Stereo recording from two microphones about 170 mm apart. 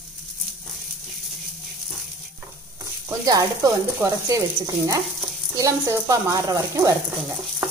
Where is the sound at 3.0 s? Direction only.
20° right (ahead or behind).